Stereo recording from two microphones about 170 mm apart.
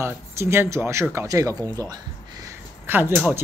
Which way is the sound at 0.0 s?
15° right (ahead or behind).